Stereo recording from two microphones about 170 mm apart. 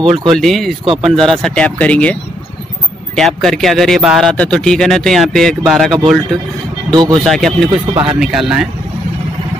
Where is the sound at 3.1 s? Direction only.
5° left (ahead or behind).